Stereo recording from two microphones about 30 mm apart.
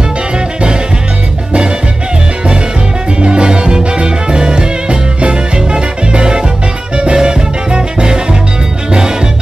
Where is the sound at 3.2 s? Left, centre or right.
Right.